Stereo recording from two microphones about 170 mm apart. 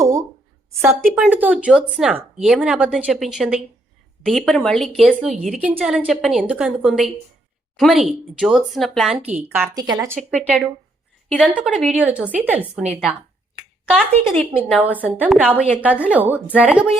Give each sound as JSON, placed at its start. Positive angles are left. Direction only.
{"t": 0.0, "sound": "a sound", "side_deg": -15}
{"t": 1.1, "sound": "a woman's voice", "side_deg": -10}
{"t": 9.7, "sound": "speech", "side_deg": -25}
{"t": 10.2, "sound": "a woman's voice", "side_deg": 0}
{"t": 13.9, "sound": "speech", "side_deg": 5}
{"t": 15.0, "sound": "a woman's voice", "side_deg": -5}